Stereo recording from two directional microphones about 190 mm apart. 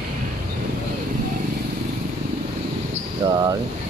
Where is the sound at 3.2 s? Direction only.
20° right (ahead or behind).